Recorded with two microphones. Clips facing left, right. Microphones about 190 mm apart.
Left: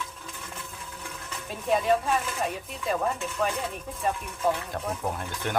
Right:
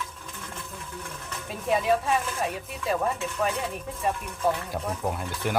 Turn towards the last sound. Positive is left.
turn(degrees=-5)  # may be behind; listen again after turning